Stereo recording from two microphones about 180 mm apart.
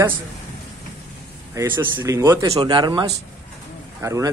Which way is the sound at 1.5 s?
15° right (ahead or behind).